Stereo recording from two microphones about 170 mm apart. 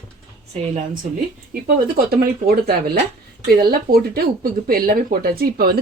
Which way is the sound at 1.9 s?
65° right (ahead or behind).